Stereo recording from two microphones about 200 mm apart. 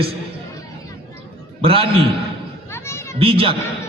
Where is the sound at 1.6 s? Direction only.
25° right (ahead or behind).